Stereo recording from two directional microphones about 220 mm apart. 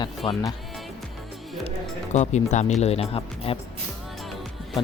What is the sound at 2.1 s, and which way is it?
Speech, 30° left (ahead or behind).